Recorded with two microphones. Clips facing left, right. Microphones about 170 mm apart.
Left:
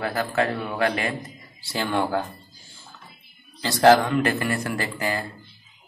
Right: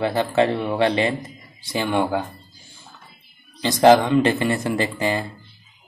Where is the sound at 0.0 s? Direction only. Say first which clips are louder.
Right 5 dB; 25° right (ahead or behind).